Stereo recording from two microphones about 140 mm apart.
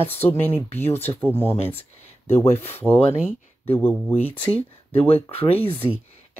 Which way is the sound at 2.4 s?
50° left (ahead or behind).